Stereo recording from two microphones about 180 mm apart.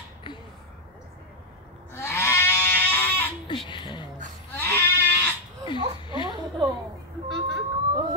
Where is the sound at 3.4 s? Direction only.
25° left (ahead or behind).